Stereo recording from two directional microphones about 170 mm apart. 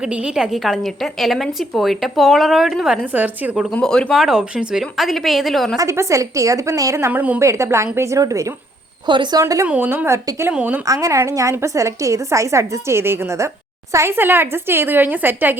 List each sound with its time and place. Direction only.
0.0 s a woman's voice: 5° right (ahead or behind)
3.8 s a woman's voice: 5° left (ahead or behind)
5.7 s a woman's voice: 20° right (ahead or behind)
10.8 s a woman's voice: 20° right (ahead or behind)